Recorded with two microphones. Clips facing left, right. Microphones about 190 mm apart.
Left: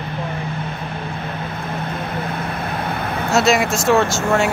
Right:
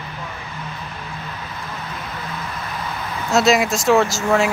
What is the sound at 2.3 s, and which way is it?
Vehicle, 60° left (ahead or behind).